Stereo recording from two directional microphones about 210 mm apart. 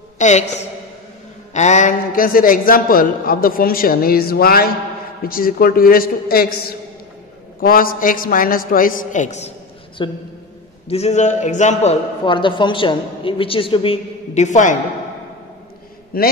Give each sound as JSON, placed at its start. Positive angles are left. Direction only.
{"t": 0.2, "sound": "a woman's voice", "side_deg": 35}
{"t": 10.0, "sound": "a man's voice", "side_deg": 20}
{"t": 16.1, "sound": "a man's voice", "side_deg": 45}